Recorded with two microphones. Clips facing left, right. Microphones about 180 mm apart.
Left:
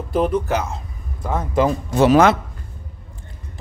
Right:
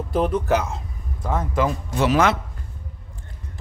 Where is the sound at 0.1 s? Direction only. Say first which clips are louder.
Left 1 dB; centre (ahead or behind).